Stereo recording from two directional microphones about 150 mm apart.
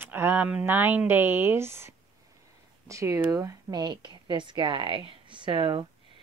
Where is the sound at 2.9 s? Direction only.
20° right (ahead or behind).